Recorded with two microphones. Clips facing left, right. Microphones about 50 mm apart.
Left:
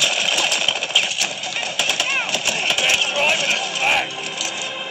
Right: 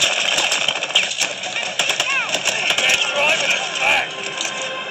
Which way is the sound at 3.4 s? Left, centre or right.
Right.